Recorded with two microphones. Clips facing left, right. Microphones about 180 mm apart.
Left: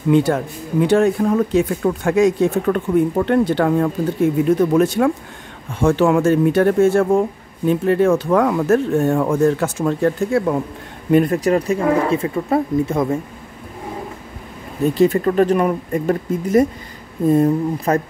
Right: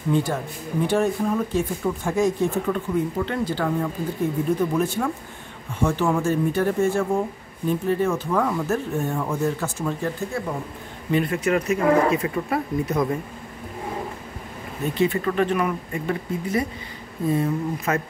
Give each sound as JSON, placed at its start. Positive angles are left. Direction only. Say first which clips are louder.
{"t": 0.1, "sound": "speech", "louder": "left 8 dB", "side_deg": 75}
{"t": 9.4, "sound": "speech", "louder": "left 8 dB", "side_deg": 70}
{"t": 11.1, "sound": "speech", "louder": "left 7 dB", "side_deg": 45}
{"t": 15.0, "sound": "speech", "louder": "left 6 dB", "side_deg": 40}
{"t": 17.9, "sound": "speech", "louder": "left 7 dB", "side_deg": 35}